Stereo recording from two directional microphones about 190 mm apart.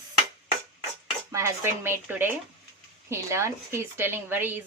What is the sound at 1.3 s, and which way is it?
Speech, 15° right (ahead or behind).